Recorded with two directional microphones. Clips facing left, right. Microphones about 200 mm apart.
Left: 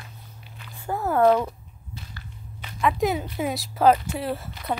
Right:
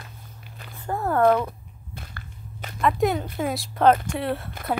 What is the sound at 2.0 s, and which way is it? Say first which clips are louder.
Whip: right 1 dB; 55° right (ahead or behind).